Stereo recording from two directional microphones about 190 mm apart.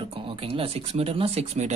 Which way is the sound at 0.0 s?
30° right (ahead or behind).